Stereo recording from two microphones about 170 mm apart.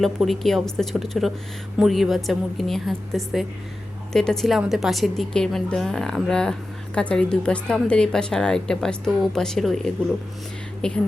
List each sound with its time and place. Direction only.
0.0 s a woman's voice: centre (ahead or behind)